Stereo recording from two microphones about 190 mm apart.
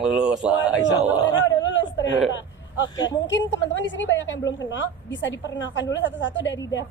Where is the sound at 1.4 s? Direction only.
75° left (ahead or behind).